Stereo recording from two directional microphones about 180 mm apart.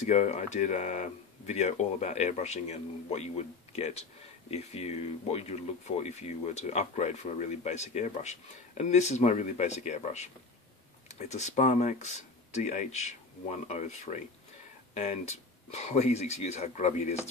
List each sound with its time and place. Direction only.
0.0 s speech: 40° left (ahead or behind)